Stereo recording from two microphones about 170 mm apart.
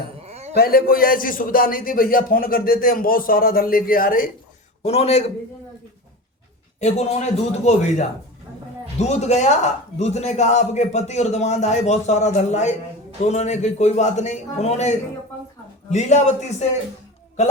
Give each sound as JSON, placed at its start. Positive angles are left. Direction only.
{"t": 0.2, "sound": "a sound", "side_deg": -40}
{"t": 0.5, "sound": "a man's voice", "side_deg": 60}
{"t": 4.8, "sound": "a man's voice", "side_deg": 40}
{"t": 6.7, "sound": "a man's voice", "side_deg": 40}